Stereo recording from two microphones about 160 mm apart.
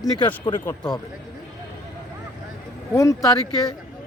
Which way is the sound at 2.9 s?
20° left (ahead or behind).